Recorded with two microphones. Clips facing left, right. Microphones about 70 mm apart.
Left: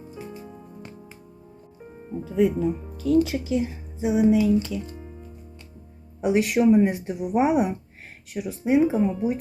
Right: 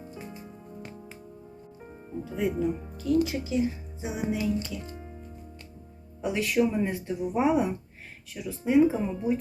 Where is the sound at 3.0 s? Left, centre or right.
Left.